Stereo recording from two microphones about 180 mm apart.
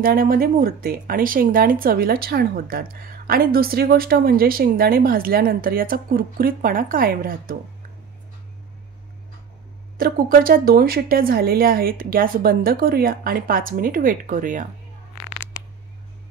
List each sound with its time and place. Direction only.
0.0 s speech: 50° right (ahead or behind)
9.9 s speech: 55° right (ahead or behind)